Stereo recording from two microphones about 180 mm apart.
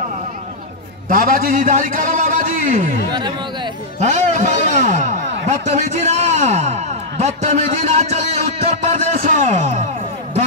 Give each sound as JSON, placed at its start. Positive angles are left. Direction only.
{"t": 1.1, "sound": "a man's voice", "side_deg": -50}
{"t": 3.1, "sound": "speech", "side_deg": -25}
{"t": 4.0, "sound": "a man's voice", "side_deg": -40}